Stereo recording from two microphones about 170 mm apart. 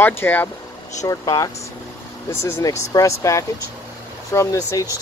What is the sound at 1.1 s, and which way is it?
Speech, 20° left (ahead or behind).